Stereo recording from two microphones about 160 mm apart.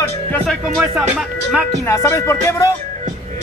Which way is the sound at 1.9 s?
20° left (ahead or behind).